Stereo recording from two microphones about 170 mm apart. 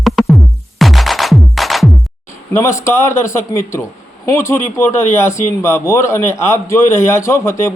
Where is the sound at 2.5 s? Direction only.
15° left (ahead or behind).